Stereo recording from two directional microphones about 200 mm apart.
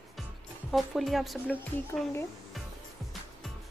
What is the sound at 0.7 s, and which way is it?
A woman's voice, centre (ahead or behind).